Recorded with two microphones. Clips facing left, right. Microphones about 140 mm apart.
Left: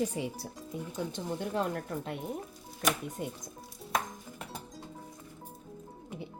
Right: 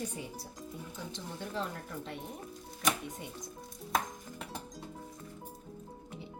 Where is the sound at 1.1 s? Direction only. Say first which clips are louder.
Left 5 dB; 55° left (ahead or behind).